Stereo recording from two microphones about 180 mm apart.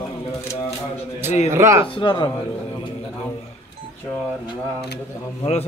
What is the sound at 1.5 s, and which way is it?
Speech, 15° right (ahead or behind).